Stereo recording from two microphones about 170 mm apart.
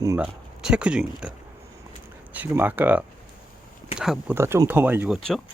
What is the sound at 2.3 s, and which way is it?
Speech, 10° right (ahead or behind).